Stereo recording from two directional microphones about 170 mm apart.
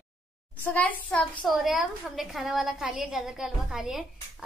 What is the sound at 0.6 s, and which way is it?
A woman's voice, 10° left (ahead or behind).